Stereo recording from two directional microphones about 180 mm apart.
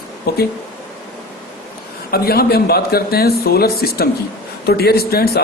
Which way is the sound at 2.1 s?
60° left (ahead or behind).